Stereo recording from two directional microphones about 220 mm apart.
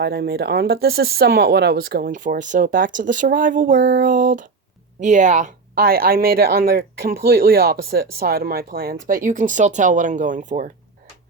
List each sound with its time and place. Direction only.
0.0 s a woman's voice: 45° right (ahead or behind)